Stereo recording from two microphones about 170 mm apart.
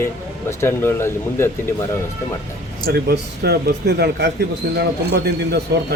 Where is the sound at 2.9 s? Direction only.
70° right (ahead or behind).